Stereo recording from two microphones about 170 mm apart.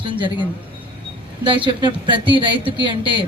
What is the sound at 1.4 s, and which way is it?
Speech, 30° right (ahead or behind).